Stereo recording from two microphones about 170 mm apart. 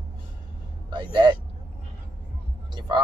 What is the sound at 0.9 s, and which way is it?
Speech, 25° right (ahead or behind).